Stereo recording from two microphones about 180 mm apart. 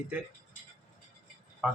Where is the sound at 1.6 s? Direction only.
5° right (ahead or behind).